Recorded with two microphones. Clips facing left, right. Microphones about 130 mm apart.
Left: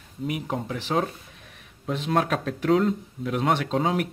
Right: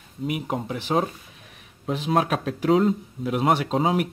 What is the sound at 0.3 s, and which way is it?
Speech, 10° right (ahead or behind).